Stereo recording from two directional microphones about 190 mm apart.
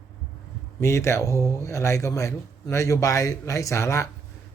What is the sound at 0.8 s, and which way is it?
A man's voice, 15° left (ahead or behind).